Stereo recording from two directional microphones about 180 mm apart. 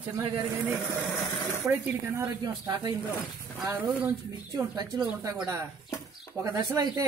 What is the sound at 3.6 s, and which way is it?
A man's voice, 5° right (ahead or behind).